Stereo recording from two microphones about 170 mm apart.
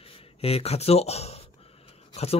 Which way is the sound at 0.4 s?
35° left (ahead or behind).